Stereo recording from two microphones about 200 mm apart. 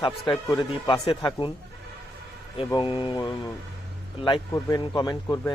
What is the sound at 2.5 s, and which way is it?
A man's voice, 25° left (ahead or behind).